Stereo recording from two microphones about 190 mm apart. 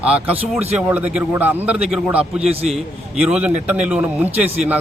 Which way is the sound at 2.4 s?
30° right (ahead or behind).